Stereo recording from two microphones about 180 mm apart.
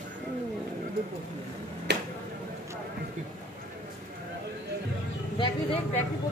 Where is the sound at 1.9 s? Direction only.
70° right (ahead or behind).